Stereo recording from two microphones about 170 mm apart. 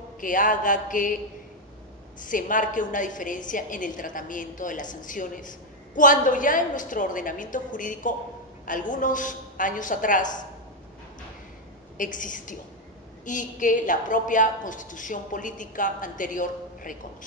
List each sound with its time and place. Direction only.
0.2 s a woman's voice: 50° left (ahead or behind)
12.0 s a woman's voice: 50° left (ahead or behind)